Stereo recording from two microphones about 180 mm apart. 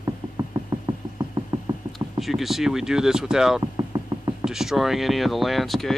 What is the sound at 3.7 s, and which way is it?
Music, 20° right (ahead or behind).